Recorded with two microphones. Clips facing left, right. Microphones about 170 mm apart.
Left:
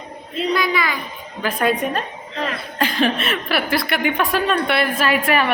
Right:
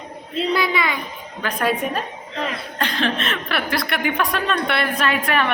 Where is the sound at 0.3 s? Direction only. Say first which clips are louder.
Left 1 dB; 30° right (ahead or behind).